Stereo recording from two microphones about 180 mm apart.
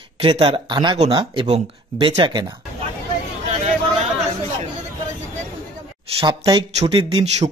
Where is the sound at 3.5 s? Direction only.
40° right (ahead or behind).